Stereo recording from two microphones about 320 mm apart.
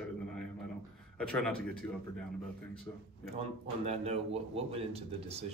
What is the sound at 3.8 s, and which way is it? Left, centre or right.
A man's voice, centre.